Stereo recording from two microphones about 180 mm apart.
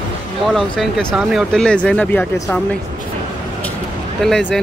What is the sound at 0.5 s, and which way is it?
Speech, centre (ahead or behind).